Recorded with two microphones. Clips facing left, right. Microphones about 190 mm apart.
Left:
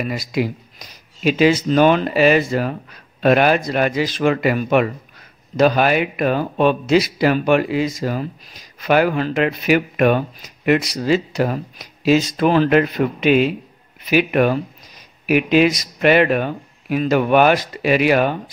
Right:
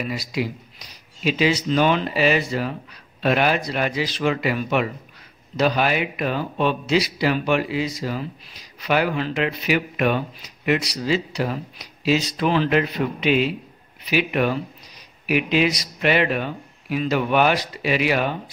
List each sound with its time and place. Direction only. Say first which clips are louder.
0.0 s a man's voice: left 4 dB; 50° left (ahead or behind)